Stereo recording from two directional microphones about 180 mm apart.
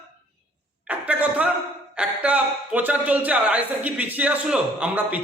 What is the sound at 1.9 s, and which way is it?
Speech, 5° right (ahead or behind).